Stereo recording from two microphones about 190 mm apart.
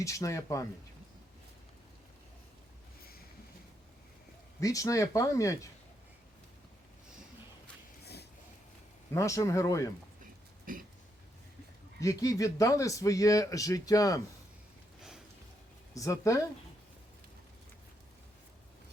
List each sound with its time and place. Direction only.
0.0 s speech: 15° left (ahead or behind)
4.6 s speech: 20° left (ahead or behind)
8.0 s a sound: 60° left (ahead or behind)
9.1 s speech: 15° left (ahead or behind)
10.7 s a sound: 45° right (ahead or behind)
11.9 s speech: 15° left (ahead or behind)
16.0 s speech: 15° left (ahead or behind)